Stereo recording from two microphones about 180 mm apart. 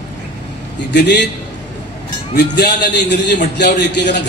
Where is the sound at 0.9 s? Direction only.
70° left (ahead or behind).